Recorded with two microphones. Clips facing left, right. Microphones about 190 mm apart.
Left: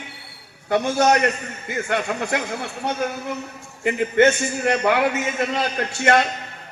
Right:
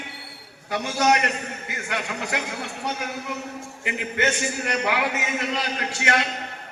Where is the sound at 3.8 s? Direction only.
50° left (ahead or behind).